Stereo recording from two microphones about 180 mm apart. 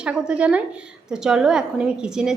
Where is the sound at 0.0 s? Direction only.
5° right (ahead or behind).